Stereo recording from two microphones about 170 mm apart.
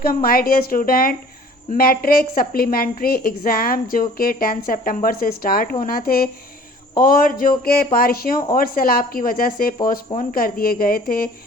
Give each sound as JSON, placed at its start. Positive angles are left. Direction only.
{"t": 0.0, "sound": "a woman's voice", "side_deg": 60}